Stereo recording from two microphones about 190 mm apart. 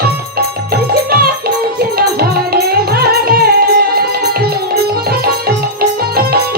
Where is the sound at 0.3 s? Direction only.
50° right (ahead or behind).